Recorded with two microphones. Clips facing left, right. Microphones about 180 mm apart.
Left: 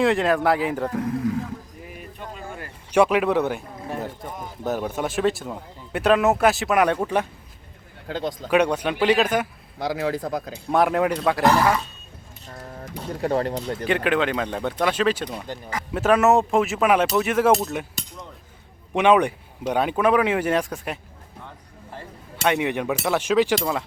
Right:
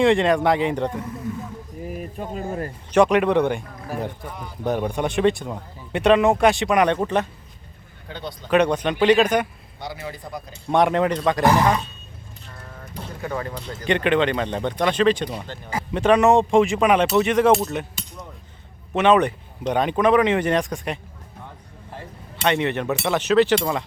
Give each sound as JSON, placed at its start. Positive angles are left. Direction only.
{"t": 0.0, "sound": "speech", "side_deg": 0}
{"t": 2.1, "sound": "speech", "side_deg": -40}
{"t": 2.9, "sound": "speech", "side_deg": 5}
{"t": 8.0, "sound": "speech", "side_deg": 90}
{"t": 8.4, "sound": "speech", "side_deg": 10}
{"t": 9.7, "sound": "speech", "side_deg": 90}
{"t": 10.7, "sound": "speech", "side_deg": 5}
{"t": 13.1, "sound": "speech", "side_deg": 30}
{"t": 13.8, "sound": "speech", "side_deg": 5}
{"t": 18.9, "sound": "speech", "side_deg": 10}
{"t": 22.4, "sound": "speech", "side_deg": 10}